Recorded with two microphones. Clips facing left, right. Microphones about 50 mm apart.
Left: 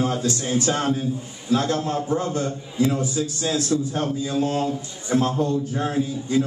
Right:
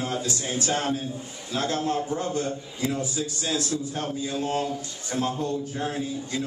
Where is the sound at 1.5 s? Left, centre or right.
Left.